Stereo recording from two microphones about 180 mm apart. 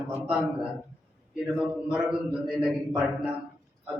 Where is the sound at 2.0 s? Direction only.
5° right (ahead or behind).